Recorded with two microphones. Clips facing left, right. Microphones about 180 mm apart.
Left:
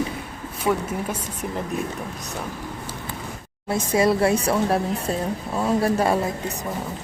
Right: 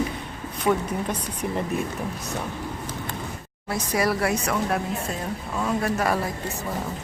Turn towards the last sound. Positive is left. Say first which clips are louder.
# left 4 dB
turn(degrees=30)  # may be behind; listen again after turning